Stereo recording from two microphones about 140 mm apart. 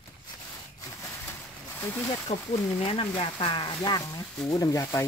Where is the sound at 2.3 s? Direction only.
50° left (ahead or behind); by 5.0 s 20° left (ahead or behind).